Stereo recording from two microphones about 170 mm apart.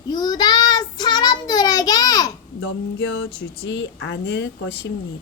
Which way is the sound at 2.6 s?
80° left.